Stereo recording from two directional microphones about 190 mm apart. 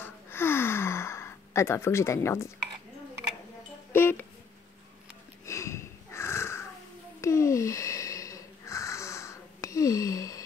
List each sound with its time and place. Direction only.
0.0 s gasp: 10° left (ahead or behind)
3.9 s a sound: 10° left (ahead or behind)
5.4 s wheeze: 15° left (ahead or behind)